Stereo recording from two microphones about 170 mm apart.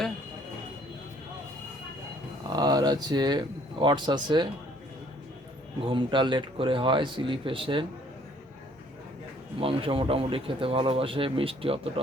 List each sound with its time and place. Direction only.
2.5 s speech: 25° right (ahead or behind)
5.8 s speech: 30° right (ahead or behind)
9.6 s speech: 30° right (ahead or behind)